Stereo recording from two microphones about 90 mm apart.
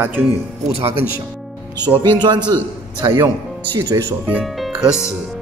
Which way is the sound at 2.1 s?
55° right (ahead or behind).